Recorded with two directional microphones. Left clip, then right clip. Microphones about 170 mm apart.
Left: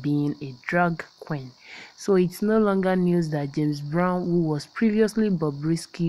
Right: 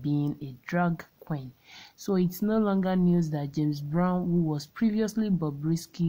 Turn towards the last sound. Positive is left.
turn(degrees=15)  # may be behind; listen again after turning